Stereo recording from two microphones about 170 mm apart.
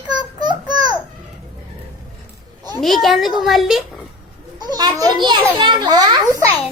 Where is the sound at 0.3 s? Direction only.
25° right (ahead or behind).